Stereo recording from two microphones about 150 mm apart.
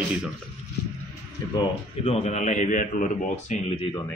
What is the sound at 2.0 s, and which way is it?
A man's voice, 45° left (ahead or behind).